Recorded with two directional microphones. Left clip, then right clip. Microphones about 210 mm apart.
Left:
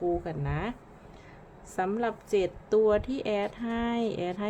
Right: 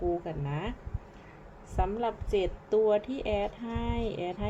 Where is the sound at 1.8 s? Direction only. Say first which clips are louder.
Left 1 dB; 20° left (ahead or behind).